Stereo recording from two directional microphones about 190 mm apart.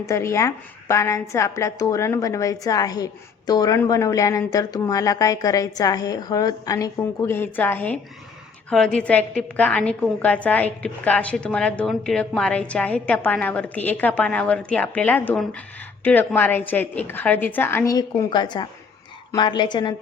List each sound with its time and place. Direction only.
0.0 s a woman's voice: 15° left (ahead or behind)